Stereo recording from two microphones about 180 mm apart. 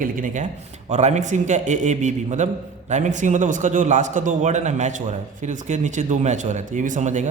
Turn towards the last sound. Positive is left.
turn(degrees=-40)  # may be behind; listen again after turning